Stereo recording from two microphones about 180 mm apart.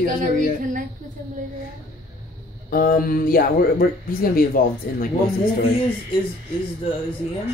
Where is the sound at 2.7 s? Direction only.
50° left (ahead or behind).